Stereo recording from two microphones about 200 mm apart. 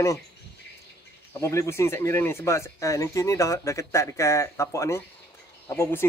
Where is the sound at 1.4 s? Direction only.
15° left (ahead or behind).